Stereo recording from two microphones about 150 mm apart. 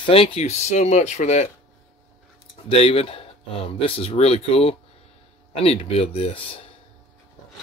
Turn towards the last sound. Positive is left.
turn(degrees=40)  # may be behind; listen again after turning